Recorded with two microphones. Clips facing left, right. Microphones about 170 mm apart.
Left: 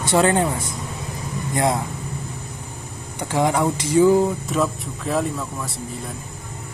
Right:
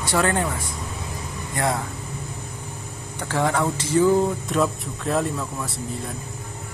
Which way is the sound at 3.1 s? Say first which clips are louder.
Left 3 dB; 15° left (ahead or behind).